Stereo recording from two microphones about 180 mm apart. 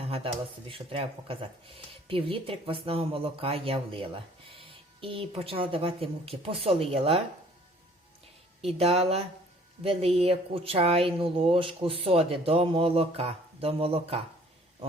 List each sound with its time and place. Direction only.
0.0 s a sound: 30° right (ahead or behind)
0.7 s speech: 30° right (ahead or behind)
8.6 s speech: 35° right (ahead or behind)